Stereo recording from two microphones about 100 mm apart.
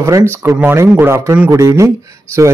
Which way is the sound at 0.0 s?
30° right (ahead or behind).